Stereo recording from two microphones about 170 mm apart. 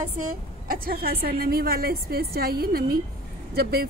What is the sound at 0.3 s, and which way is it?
A woman's voice, 60° right (ahead or behind).